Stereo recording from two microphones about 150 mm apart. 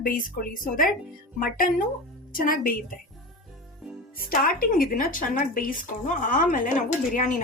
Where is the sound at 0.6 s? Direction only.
70° left (ahead or behind).